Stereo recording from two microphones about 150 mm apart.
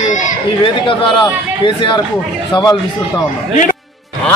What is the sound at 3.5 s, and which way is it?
Speech, 55° left (ahead or behind).